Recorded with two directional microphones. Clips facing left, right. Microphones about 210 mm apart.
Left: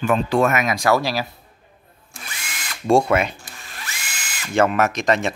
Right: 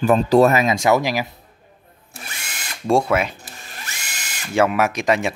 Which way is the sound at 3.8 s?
40° right (ahead or behind).